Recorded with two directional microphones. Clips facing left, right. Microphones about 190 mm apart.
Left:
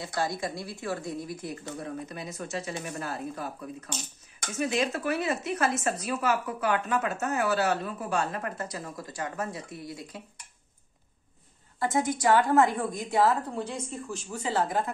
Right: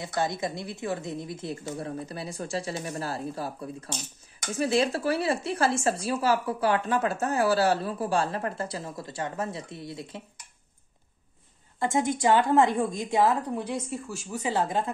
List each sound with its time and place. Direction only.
0.0 s a woman's voice: 20° right (ahead or behind)
11.8 s a woman's voice: 25° right (ahead or behind)